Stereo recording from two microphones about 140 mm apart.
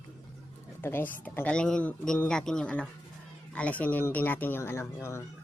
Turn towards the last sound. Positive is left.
turn(degrees=20)  # may be behind; listen again after turning